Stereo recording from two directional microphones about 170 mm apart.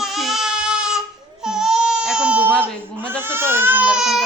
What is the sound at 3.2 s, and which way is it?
Speech, 15° right (ahead or behind).